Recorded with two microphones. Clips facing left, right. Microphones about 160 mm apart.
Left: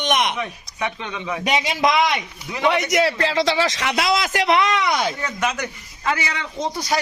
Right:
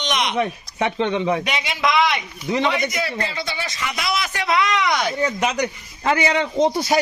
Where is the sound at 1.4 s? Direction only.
40° left (ahead or behind).